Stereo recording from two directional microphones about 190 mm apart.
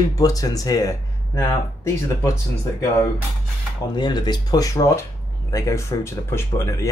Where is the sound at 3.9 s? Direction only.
25° left (ahead or behind).